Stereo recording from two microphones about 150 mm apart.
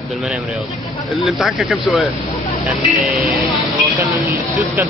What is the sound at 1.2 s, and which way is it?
Speech, centre (ahead or behind).